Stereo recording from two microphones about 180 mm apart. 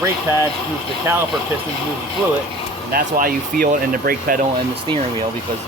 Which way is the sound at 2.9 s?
55° right (ahead or behind).